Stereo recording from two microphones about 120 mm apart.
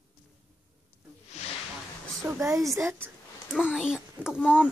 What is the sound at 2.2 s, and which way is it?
Speech, 25° right (ahead or behind).